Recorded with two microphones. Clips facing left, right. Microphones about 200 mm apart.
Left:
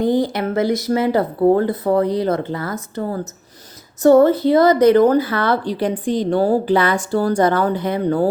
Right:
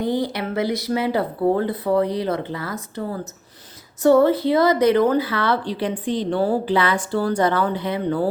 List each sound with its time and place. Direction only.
0.0 s a woman's voice: 45° left (ahead or behind)